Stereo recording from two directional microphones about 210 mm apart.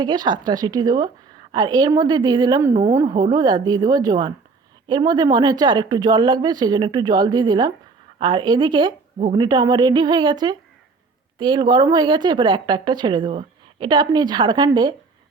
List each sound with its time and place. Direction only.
0.0 s speech: 20° right (ahead or behind)